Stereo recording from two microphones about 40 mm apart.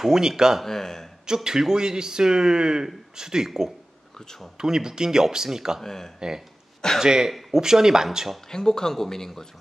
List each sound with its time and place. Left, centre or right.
0.0 s speech: centre
0.7 s speech: centre
1.2 s speech: centre
5.8 s speech: centre
6.1 s speech: centre
8.5 s speech: centre